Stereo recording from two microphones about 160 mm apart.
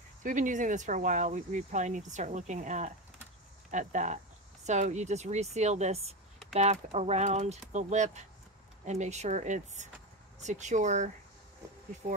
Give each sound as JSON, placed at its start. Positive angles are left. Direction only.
{"t": 0.2, "sound": "speech", "side_deg": -55}